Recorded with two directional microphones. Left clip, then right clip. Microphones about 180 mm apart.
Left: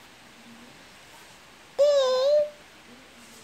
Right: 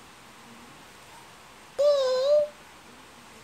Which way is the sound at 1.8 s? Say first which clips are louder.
Left 2 dB; 35° right (ahead or behind).